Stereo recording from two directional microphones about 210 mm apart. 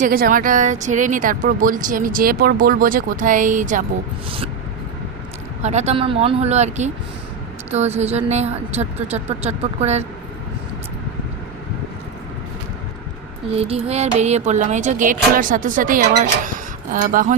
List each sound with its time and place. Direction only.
0.0 s speech: 40° right (ahead or behind)
5.6 s speech: 30° right (ahead or behind)
13.5 s speech: 30° right (ahead or behind)